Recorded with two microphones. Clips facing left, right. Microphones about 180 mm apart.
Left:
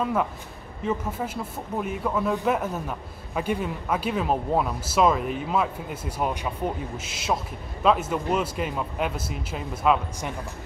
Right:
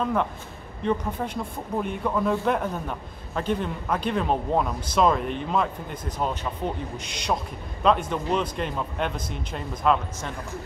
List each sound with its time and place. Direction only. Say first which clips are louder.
0.0 s a man's voice: even; 5° left (ahead or behind)